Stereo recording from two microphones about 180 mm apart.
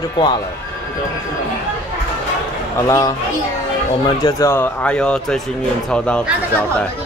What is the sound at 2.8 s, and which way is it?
Speech, 15° left (ahead or behind).